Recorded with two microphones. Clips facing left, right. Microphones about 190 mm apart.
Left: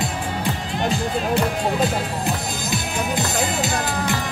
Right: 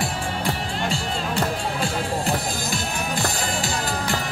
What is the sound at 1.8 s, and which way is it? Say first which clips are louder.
Music: left 3 dB; 20° left (ahead or behind).